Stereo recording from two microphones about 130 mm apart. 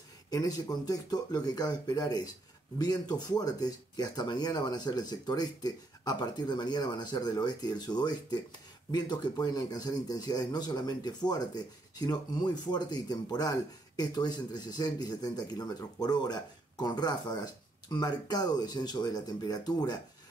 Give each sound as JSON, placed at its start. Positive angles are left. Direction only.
{"t": 0.3, "sound": "speech", "side_deg": 30}